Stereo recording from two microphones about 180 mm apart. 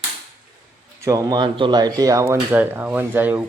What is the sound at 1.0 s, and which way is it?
Speech, 20° right (ahead or behind).